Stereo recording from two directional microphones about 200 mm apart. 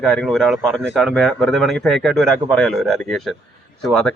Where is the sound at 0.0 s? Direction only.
5° left (ahead or behind).